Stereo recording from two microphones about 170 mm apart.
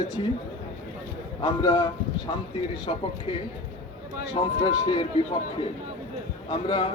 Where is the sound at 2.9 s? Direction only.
35° left (ahead or behind).